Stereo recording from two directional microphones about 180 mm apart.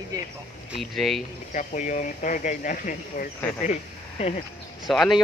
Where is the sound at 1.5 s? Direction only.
45° left (ahead or behind).